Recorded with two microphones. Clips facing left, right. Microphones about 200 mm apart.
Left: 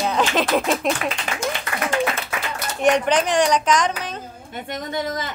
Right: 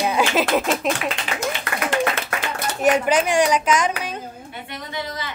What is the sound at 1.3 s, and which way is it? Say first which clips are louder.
Speech: even; 45° left (ahead or behind).